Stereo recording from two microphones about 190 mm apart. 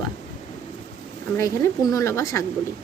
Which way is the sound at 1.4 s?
15° left (ahead or behind).